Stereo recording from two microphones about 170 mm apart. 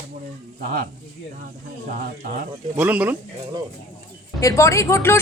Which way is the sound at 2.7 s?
10° right (ahead or behind).